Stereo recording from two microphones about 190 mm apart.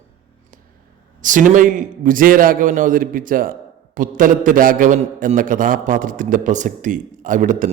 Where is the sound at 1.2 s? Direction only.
45° right (ahead or behind).